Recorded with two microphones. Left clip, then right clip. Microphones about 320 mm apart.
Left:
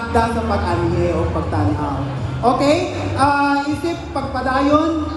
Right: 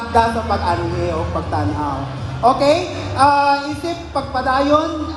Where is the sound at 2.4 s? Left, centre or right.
Centre.